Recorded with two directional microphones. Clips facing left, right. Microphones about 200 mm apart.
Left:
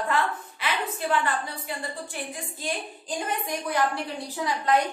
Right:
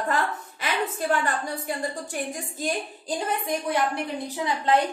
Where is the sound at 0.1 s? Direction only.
40° right (ahead or behind).